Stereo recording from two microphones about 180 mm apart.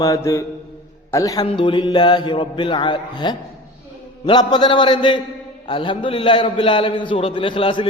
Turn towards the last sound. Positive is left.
turn(degrees=30)  # may be behind; listen again after turning